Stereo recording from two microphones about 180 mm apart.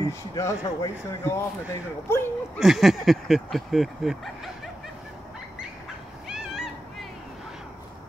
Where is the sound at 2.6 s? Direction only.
Centre (ahead or behind).